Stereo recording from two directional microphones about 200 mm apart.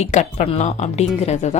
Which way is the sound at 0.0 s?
35° left (ahead or behind).